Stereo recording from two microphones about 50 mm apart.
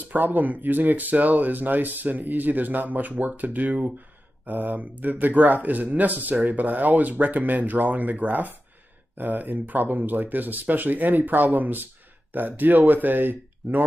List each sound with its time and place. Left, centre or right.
0.0 s speech: right